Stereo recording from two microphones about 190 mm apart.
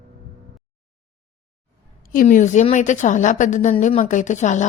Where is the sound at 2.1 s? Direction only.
45° left (ahead or behind).